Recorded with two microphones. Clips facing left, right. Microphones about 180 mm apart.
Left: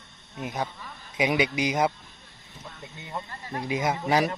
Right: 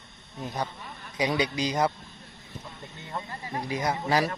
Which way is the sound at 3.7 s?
20° left (ahead or behind).